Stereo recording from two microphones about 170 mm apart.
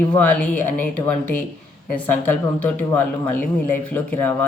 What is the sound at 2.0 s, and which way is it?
Speech, 10° left (ahead or behind).